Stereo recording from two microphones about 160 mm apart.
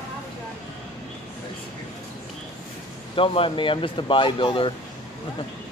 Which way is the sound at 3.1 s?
35° left (ahead or behind).